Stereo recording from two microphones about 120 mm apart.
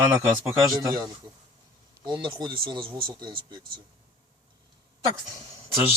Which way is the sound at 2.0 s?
40° right (ahead or behind).